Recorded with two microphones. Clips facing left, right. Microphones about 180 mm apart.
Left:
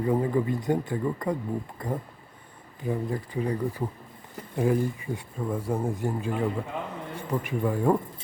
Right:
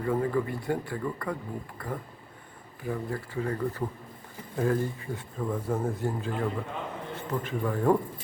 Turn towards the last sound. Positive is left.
turn(degrees=10)  # may be behind; listen again after turning